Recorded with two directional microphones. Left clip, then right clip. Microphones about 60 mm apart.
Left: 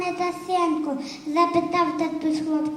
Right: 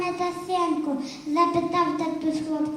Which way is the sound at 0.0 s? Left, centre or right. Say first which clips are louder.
Left 1 dB; left.